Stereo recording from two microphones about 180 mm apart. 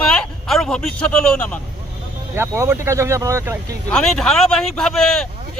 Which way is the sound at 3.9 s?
5° left (ahead or behind).